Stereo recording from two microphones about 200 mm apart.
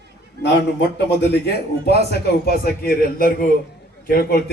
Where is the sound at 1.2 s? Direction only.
55° left (ahead or behind).